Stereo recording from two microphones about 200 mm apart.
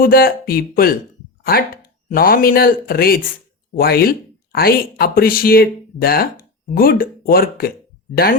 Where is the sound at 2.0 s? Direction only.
45° left (ahead or behind).